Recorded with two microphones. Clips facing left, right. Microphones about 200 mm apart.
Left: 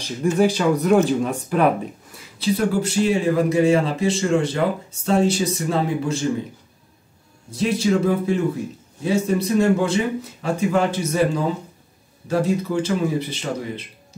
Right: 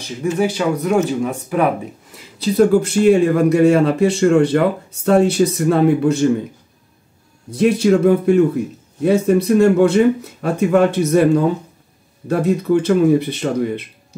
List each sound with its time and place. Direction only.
0.2 s speech: 10° right (ahead or behind)
2.4 s a man's voice: 50° right (ahead or behind)
7.5 s a man's voice: 60° right (ahead or behind)